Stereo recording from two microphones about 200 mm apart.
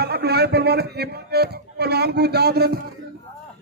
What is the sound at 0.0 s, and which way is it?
A man's voice, 50° right (ahead or behind).